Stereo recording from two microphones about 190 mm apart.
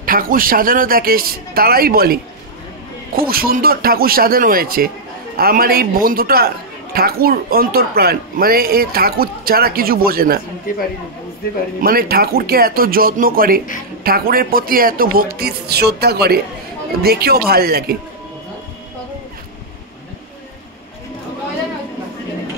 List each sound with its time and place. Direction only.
0.0 s a man's voice: 50° right (ahead or behind)
3.2 s a man's voice: 50° right (ahead or behind)
11.8 s a man's voice: 50° right (ahead or behind)